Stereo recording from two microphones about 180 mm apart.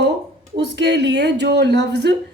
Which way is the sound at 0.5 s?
70° right (ahead or behind).